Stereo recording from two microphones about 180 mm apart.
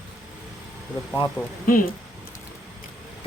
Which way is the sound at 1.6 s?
50° left (ahead or behind).